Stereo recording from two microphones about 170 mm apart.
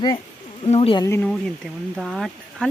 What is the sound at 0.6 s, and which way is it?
Speech, 35° left (ahead or behind).